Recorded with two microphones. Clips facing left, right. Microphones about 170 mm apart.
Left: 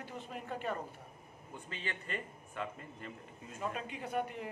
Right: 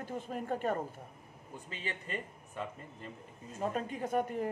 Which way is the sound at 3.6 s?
45° right (ahead or behind).